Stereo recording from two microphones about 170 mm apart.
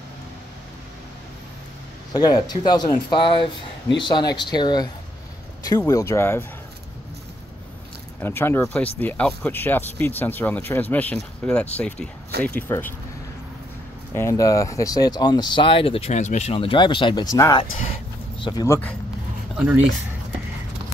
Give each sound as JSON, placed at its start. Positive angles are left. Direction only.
{"t": 2.1, "sound": "speech", "side_deg": 25}
{"t": 8.2, "sound": "speech", "side_deg": 15}
{"t": 14.1, "sound": "speech", "side_deg": 20}
{"t": 19.5, "sound": "speech", "side_deg": -10}